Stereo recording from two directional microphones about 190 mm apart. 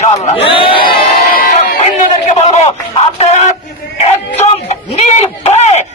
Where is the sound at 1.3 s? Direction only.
50° left (ahead or behind).